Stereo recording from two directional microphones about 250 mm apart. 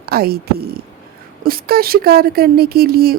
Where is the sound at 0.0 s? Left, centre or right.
Right.